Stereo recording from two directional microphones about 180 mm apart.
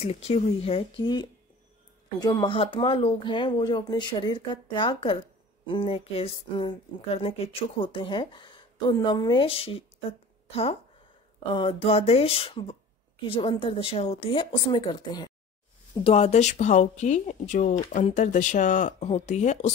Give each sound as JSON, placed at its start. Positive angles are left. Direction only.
{"t": 0.0, "sound": "speech", "side_deg": 35}
{"t": 16.0, "sound": "speech", "side_deg": 35}